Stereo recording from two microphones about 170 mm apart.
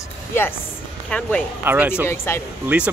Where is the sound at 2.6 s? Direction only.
5° right (ahead or behind).